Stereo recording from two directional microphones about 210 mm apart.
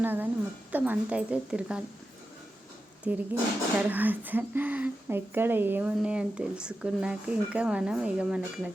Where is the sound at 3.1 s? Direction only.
10° right (ahead or behind).